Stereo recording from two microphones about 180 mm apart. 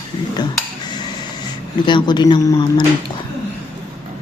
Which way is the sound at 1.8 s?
25° left (ahead or behind).